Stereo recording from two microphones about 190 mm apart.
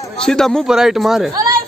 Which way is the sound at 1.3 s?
20° right (ahead or behind).